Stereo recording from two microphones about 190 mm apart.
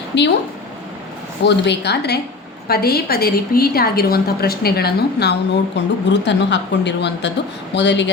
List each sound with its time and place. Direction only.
0.1 s a woman's voice: 65° left (ahead or behind)
1.5 s a woman's voice: 65° left (ahead or behind)
5.7 s speech: 65° left (ahead or behind)